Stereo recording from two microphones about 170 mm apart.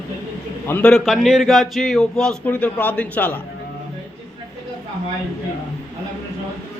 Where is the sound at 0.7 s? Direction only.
5° left (ahead or behind).